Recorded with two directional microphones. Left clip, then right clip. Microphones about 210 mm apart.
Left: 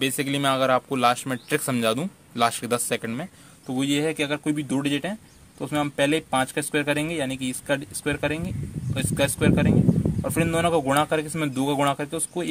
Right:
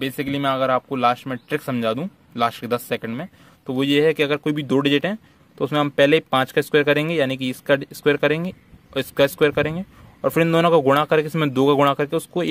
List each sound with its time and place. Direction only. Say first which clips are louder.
0.0 s speech: right 1 dB; 10° right (ahead or behind)
3.6 s speech: right 7 dB; 35° right (ahead or behind)